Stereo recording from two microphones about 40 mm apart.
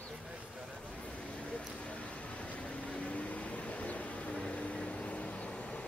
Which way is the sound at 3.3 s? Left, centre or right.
Left.